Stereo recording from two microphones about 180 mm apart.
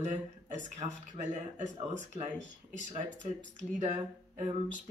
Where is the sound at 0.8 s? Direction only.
25° right (ahead or behind).